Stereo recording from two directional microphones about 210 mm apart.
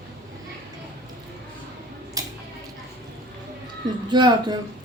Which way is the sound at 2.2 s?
15° right (ahead or behind).